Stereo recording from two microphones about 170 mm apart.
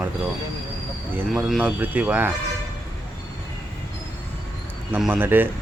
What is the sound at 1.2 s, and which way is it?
Speech, 5° right (ahead or behind).